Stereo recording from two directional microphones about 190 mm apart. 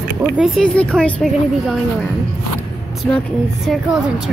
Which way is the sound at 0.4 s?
5° left (ahead or behind).